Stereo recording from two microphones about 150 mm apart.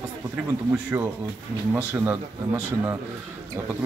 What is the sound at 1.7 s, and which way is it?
Speech, 15° right (ahead or behind).